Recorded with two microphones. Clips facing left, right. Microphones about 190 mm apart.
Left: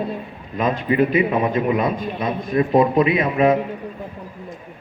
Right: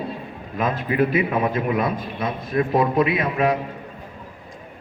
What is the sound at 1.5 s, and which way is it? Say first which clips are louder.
A man's voice: left 3 dB; 20° left (ahead or behind).